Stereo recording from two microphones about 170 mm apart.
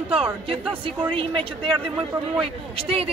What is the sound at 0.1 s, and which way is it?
Speech, 35° right (ahead or behind).